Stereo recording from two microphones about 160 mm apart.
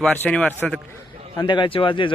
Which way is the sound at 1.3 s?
30° left (ahead or behind).